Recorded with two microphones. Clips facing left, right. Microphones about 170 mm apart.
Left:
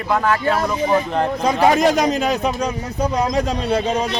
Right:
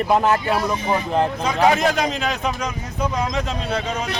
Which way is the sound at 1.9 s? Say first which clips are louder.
Left 5 dB; 40° left (ahead or behind).